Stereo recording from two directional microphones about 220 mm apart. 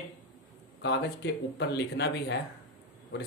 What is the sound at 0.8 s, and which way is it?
A man's voice, 50° left (ahead or behind).